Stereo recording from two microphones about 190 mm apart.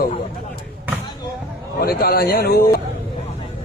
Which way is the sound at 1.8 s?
55° left (ahead or behind).